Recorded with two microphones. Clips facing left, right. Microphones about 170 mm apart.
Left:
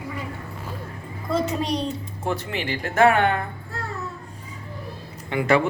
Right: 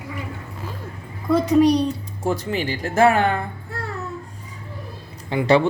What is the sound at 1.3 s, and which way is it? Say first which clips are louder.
Speech: right 8 dB; 25° left (ahead or behind).